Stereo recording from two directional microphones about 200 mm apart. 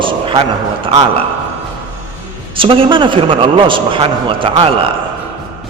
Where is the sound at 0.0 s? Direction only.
25° right (ahead or behind).